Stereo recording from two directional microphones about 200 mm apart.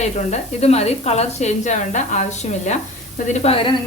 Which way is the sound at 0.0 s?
35° left (ahead or behind).